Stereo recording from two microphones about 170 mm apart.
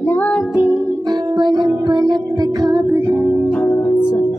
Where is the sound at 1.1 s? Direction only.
25° right (ahead or behind).